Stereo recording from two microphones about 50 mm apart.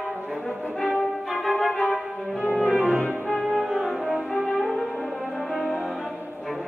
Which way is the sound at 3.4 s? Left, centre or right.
Centre.